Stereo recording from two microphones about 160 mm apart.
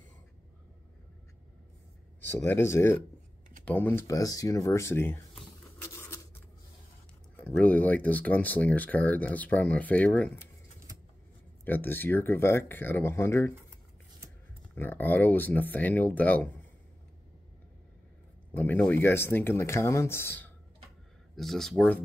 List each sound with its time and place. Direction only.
2.2 s speech: 15° left (ahead or behind)
5.8 s a sound: 15° left (ahead or behind)
7.3 s speech: 10° left (ahead or behind)
11.6 s speech: 10° left (ahead or behind)
14.8 s speech: 10° left (ahead or behind)
18.5 s speech: 10° left (ahead or behind)
21.4 s speech: centre (ahead or behind)